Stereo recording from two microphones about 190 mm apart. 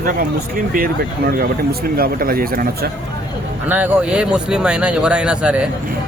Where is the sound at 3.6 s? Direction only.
10° right (ahead or behind).